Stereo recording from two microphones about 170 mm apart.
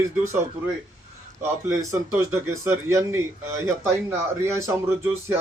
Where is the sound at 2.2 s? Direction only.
15° right (ahead or behind).